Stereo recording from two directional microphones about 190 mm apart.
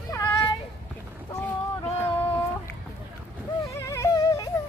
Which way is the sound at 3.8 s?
15° left (ahead or behind).